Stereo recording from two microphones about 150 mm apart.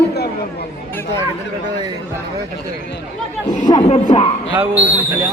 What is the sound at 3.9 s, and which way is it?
Speech, 40° left (ahead or behind).